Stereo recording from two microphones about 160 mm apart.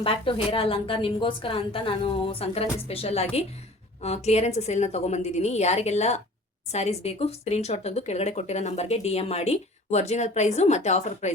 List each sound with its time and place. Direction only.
0.0 s a woman's voice: 35° left (ahead or behind)